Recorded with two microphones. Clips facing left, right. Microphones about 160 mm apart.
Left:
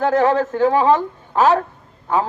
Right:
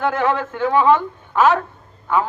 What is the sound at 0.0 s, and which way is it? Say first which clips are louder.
A man's voice: left 4 dB; 40° left (ahead or behind).